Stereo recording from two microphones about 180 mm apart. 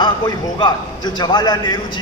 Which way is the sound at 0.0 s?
25° left (ahead or behind).